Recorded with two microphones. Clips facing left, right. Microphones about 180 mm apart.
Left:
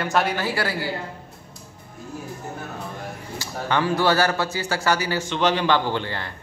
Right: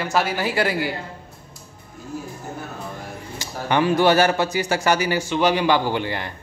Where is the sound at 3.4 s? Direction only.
15° right (ahead or behind).